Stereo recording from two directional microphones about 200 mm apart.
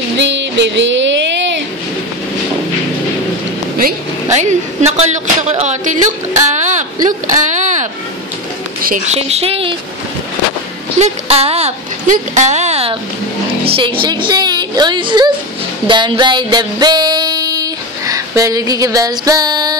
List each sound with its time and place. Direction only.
0.2 s music: 65° right (ahead or behind)
3.7 s a woman's voice: 40° right (ahead or behind)
11.0 s a woman's voice: 30° right (ahead or behind)
15.9 s music: 25° right (ahead or behind)